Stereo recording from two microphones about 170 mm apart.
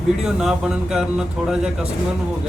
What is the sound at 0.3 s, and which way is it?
A man's voice, 5° right (ahead or behind).